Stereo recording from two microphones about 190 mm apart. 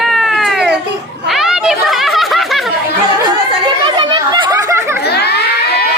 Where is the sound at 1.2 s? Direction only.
Centre (ahead or behind).